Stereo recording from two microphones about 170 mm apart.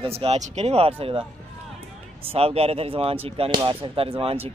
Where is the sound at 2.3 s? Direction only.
35° right (ahead or behind).